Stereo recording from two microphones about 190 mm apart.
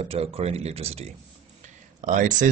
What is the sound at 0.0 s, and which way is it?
Speech, 35° right (ahead or behind).